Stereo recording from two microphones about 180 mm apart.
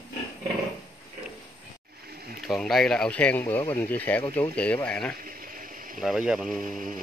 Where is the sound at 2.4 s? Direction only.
Centre (ahead or behind).